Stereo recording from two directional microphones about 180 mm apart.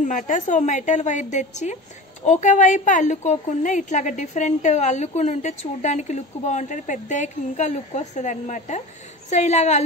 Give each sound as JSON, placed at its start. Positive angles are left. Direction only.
{"t": 0.0, "sound": "a woman's voice", "side_deg": 45}